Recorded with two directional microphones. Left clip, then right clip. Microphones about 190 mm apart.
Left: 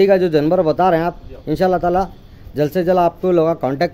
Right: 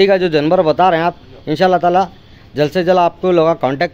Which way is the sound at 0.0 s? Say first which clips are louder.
Right 1 dB; 5° left (ahead or behind).